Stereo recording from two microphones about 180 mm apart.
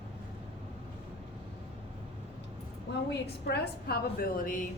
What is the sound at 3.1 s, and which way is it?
A woman's voice, 65° left (ahead or behind).